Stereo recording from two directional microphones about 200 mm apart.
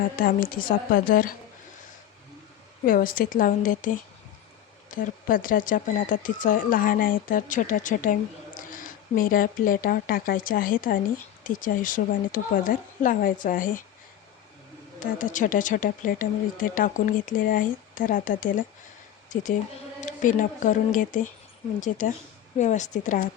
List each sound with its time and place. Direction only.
0.2 s speech: 45° left (ahead or behind)
2.8 s speech: 45° left (ahead or behind)
14.9 s speech: 40° left (ahead or behind)